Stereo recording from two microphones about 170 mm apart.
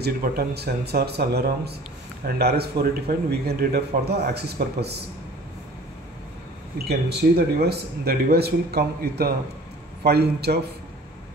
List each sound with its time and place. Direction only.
0.0 s a man's voice: 70° right (ahead or behind)
6.9 s a man's voice: 70° right (ahead or behind)